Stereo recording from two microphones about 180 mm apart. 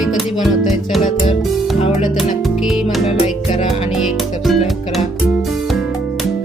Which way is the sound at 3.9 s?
Centre (ahead or behind).